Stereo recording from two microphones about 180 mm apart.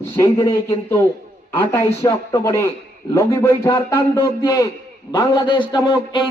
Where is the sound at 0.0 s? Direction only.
15° left (ahead or behind).